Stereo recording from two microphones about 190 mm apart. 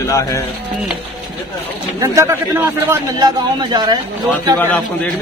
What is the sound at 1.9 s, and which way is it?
A man's voice, 15° right (ahead or behind).